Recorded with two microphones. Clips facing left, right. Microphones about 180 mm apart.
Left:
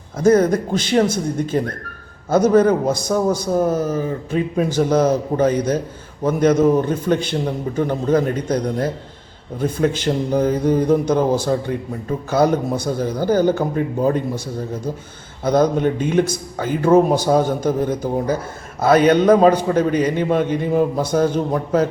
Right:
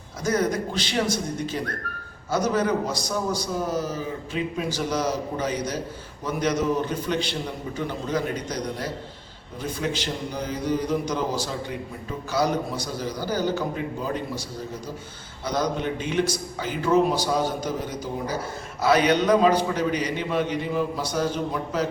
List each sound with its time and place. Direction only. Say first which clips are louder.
0.2 s a man's voice: left 10 dB; 55° left (ahead or behind)
15.4 s a man's voice: left 10 dB; 50° left (ahead or behind)